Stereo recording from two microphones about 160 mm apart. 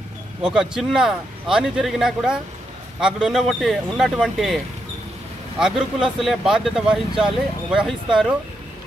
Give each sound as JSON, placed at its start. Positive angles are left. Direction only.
{"t": 0.4, "sound": "speech", "side_deg": -5}
{"t": 5.6, "sound": "speech", "side_deg": -5}